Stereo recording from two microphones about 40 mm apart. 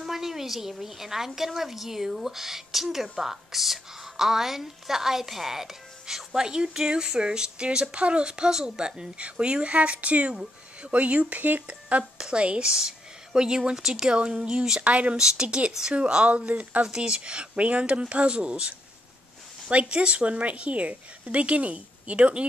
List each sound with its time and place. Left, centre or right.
0.0 s a woman's voice: centre; by 11.6 s right
12.2 s speech: right
14.1 s a woman's voice: right
15.1 s a woman's voice: centre